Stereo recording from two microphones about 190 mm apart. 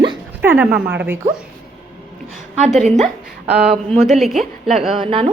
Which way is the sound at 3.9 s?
Centre (ahead or behind).